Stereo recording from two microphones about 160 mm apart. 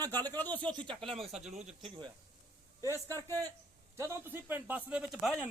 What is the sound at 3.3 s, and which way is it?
Speech, 20° right (ahead or behind).